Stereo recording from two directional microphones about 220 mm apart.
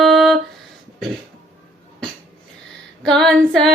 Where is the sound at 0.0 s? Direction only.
Centre (ahead or behind).